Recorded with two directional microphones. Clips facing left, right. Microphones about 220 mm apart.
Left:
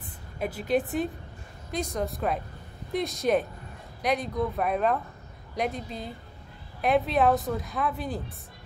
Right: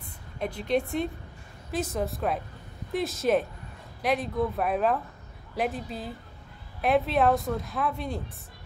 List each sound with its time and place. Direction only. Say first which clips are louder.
0.4 s speech: left 1 dB; 5° left (ahead or behind)